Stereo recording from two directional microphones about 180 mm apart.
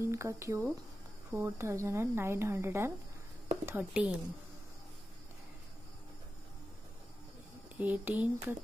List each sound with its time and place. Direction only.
0.0 s a woman's voice: 15° right (ahead or behind)
7.7 s speech: 10° right (ahead or behind)